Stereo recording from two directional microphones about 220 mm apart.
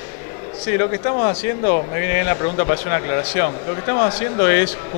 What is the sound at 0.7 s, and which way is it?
Speech, 20° left (ahead or behind).